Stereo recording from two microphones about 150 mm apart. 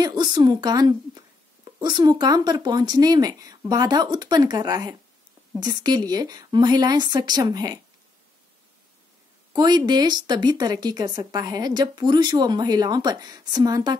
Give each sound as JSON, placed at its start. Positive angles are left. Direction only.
{"t": 0.0, "sound": "speech", "side_deg": -25}
{"t": 9.5, "sound": "speech", "side_deg": -30}